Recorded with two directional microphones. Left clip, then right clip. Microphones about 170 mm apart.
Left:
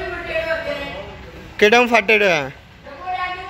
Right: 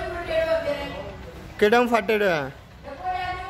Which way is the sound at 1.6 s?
Centre (ahead or behind).